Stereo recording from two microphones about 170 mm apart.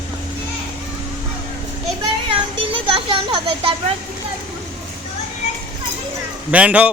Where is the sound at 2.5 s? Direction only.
30° right (ahead or behind).